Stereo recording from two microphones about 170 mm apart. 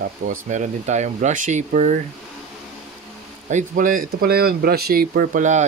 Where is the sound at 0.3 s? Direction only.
45° right (ahead or behind).